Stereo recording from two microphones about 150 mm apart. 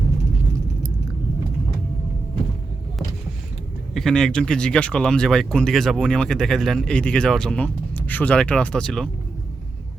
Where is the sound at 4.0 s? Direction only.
5° left (ahead or behind).